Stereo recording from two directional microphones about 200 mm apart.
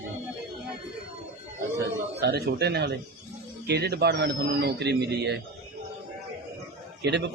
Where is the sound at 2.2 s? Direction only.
55° right (ahead or behind).